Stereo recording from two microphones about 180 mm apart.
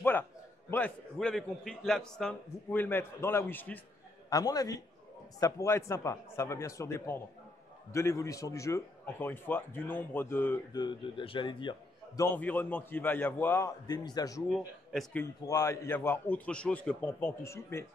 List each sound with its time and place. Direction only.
0.0 s a man's voice: 10° left (ahead or behind)
4.3 s a man's voice: 20° left (ahead or behind)
10.7 s speech: 25° left (ahead or behind)
12.2 s a man's voice: 10° left (ahead or behind)
14.5 s a man's voice: centre (ahead or behind)
15.4 s a man's voice: 15° left (ahead or behind)